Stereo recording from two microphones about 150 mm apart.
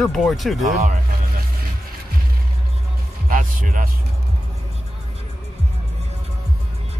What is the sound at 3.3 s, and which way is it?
Speech, 60° right (ahead or behind).